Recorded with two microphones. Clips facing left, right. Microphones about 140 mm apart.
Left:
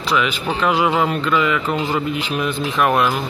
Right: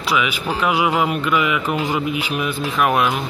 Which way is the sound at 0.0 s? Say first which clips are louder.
Left 1 dB; 10° right (ahead or behind).